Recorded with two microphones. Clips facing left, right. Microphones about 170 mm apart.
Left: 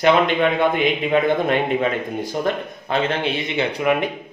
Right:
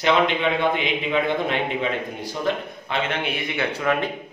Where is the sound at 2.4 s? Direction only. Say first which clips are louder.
Left 2 dB; 40° left (ahead or behind); by 4.1 s 15° left (ahead or behind).